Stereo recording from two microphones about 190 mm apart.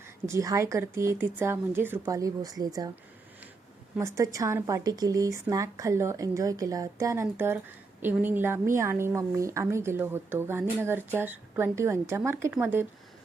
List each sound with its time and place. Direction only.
0.3 s a woman's voice: 15° right (ahead or behind)
3.9 s a woman's voice: 15° right (ahead or behind)